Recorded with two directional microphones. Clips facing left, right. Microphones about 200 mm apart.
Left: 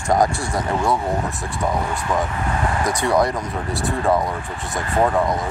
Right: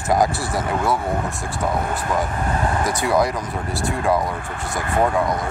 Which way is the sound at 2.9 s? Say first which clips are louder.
Left 1 dB; centre (ahead or behind).